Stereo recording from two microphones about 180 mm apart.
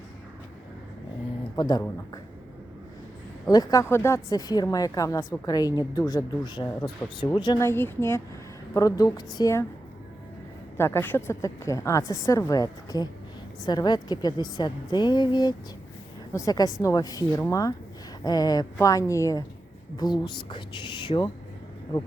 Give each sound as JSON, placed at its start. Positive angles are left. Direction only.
{"t": 1.5, "sound": "speech", "side_deg": 25}
{"t": 3.4, "sound": "a woman's voice", "side_deg": 20}
{"t": 10.8, "sound": "a woman's voice", "side_deg": 15}